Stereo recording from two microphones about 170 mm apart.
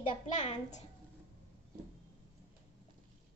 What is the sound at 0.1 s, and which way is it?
Speech, 45° left (ahead or behind).